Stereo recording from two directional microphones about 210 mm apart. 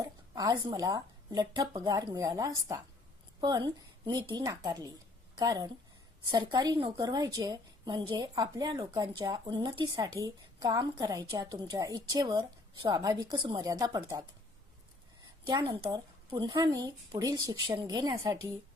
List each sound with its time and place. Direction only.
0.0 s a woman's voice: 20° right (ahead or behind)
15.4 s a woman's voice: 20° right (ahead or behind)